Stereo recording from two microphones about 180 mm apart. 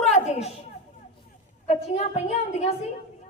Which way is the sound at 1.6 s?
35° left (ahead or behind).